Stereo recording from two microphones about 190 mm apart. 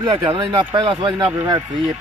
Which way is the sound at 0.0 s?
25° right (ahead or behind).